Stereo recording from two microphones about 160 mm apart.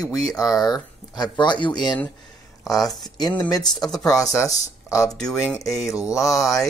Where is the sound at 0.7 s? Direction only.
25° left (ahead or behind).